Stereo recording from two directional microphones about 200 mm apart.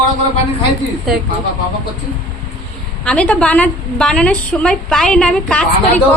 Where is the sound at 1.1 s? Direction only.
Centre (ahead or behind).